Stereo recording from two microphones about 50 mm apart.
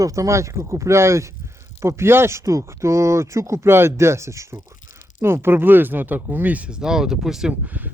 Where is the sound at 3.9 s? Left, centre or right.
Right.